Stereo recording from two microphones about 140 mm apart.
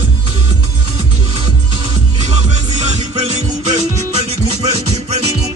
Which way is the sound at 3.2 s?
50° right (ahead or behind).